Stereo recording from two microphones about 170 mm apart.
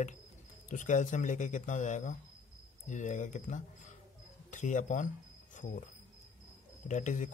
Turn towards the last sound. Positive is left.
turn(degrees=45)  # may be behind; listen again after turning